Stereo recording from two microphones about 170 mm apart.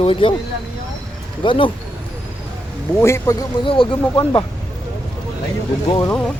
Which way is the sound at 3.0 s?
15° left (ahead or behind).